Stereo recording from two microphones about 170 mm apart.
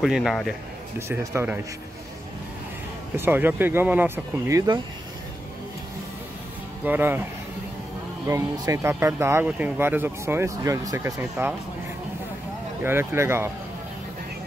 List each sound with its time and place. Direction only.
0.0 s a man's voice: centre (ahead or behind)
0.9 s speech: 15° right (ahead or behind)
3.2 s speech: 10° right (ahead or behind)
6.8 s speech: 10° right (ahead or behind)
8.3 s speech: 15° right (ahead or behind)
12.8 s speech: 15° right (ahead or behind)